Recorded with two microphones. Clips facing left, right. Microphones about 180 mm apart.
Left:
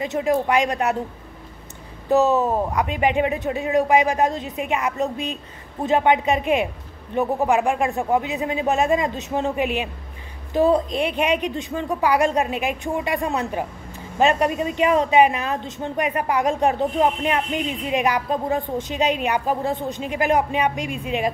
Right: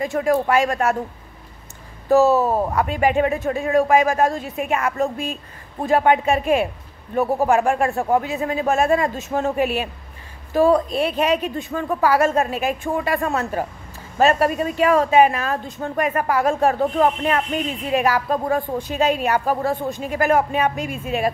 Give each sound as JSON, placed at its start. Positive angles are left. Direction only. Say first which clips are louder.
{"t": 0.0, "sound": "a woman's voice", "louder": "right 2 dB", "side_deg": 20}
{"t": 2.0, "sound": "a woman's voice", "louder": "right 3 dB", "side_deg": 20}